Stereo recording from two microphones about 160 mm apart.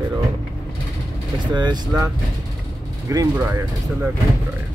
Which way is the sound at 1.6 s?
25° right (ahead or behind).